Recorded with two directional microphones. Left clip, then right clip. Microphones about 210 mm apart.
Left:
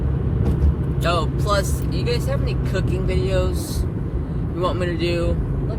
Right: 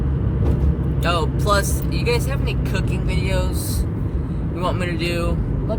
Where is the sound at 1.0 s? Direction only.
20° right (ahead or behind).